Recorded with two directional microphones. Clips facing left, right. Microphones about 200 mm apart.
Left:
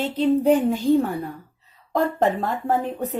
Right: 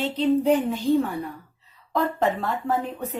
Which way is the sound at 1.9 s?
45° left (ahead or behind).